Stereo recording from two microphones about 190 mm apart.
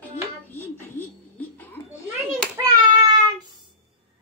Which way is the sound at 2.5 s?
20° right (ahead or behind).